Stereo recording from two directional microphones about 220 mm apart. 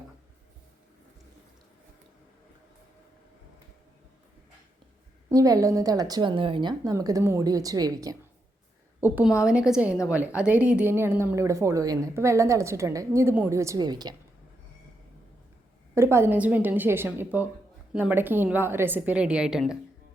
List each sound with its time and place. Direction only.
5.3 s a woman's voice: 15° right (ahead or behind)
16.0 s speech: 10° right (ahead or behind)